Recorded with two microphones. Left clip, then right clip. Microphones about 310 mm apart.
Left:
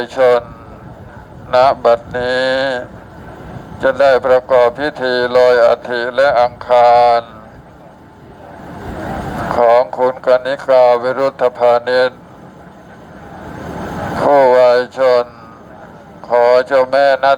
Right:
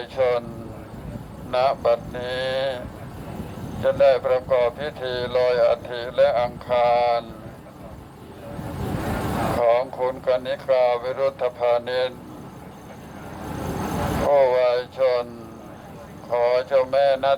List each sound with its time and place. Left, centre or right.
0.0 s speech: left
1.5 s speech: left
3.8 s speech: left
9.6 s speech: left
14.3 s speech: left
16.3 s speech: left